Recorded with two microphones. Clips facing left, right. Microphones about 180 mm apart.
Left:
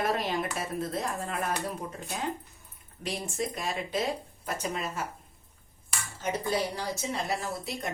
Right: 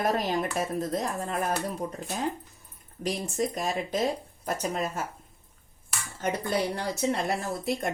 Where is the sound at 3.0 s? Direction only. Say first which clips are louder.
Right 4 dB; 45° right (ahead or behind).